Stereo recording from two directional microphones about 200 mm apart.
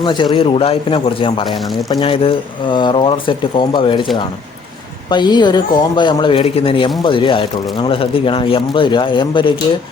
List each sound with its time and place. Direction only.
0.0 s speech: 25° left (ahead or behind)
1.5 s speech: centre (ahead or behind)
1.9 s speech: 25° left (ahead or behind)